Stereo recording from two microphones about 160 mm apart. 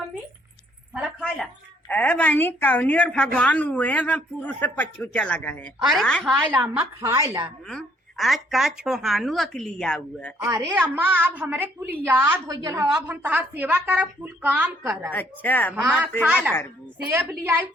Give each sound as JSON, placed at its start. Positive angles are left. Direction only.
{"t": 0.9, "sound": "a woman's voice", "side_deg": 0}
{"t": 6.3, "sound": "a woman's voice", "side_deg": -15}
{"t": 7.7, "sound": "a woman's voice", "side_deg": 0}
{"t": 10.4, "sound": "a woman's voice", "side_deg": -15}
{"t": 15.1, "sound": "speech", "side_deg": 10}
{"t": 16.2, "sound": "a woman's voice", "side_deg": -5}